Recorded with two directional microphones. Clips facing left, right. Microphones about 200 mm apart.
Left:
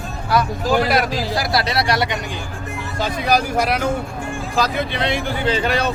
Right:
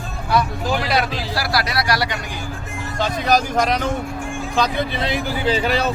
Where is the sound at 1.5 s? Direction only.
25° left (ahead or behind).